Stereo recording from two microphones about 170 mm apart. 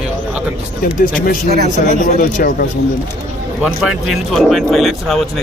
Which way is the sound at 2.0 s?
60° left (ahead or behind).